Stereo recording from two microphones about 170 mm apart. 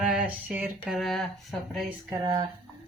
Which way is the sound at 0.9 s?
Centre (ahead or behind).